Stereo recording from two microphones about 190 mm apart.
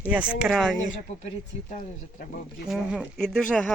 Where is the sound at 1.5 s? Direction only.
35° left (ahead or behind).